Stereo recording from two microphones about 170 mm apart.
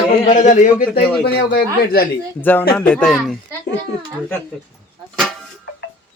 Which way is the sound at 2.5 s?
10° left (ahead or behind).